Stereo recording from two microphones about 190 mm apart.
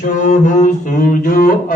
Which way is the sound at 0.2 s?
40° left (ahead or behind).